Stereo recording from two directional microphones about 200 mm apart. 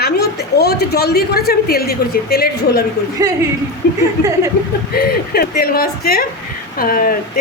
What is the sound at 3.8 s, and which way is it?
A woman's voice, 55° left (ahead or behind).